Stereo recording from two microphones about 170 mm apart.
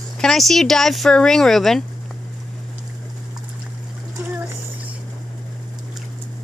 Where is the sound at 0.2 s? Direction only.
Centre (ahead or behind).